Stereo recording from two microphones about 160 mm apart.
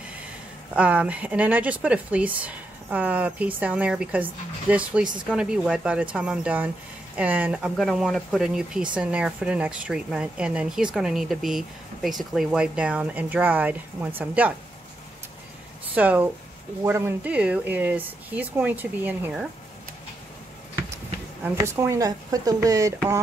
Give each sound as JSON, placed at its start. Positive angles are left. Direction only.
{"t": 0.7, "sound": "speech", "side_deg": -10}
{"t": 15.9, "sound": "speech", "side_deg": -10}
{"t": 21.5, "sound": "speech", "side_deg": -20}